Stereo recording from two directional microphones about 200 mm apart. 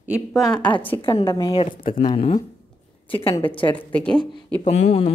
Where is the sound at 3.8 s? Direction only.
5° left (ahead or behind).